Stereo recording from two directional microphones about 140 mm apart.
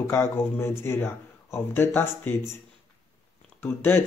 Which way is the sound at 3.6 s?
15° left (ahead or behind).